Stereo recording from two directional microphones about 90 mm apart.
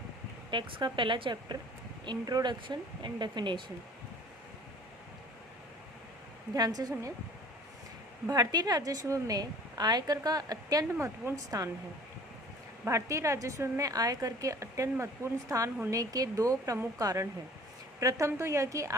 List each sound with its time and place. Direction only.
0.5 s speech: 60° right (ahead or behind)
2.0 s speech: 50° right (ahead or behind)
6.5 s a woman's voice: 45° right (ahead or behind)
8.3 s a woman's voice: 45° right (ahead or behind)
10.9 s speech: 25° right (ahead or behind)
12.8 s a woman's voice: 35° right (ahead or behind)
18.3 s a woman's voice: 30° right (ahead or behind)